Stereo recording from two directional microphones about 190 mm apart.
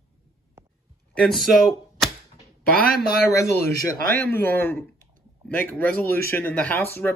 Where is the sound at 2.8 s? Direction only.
50° left (ahead or behind).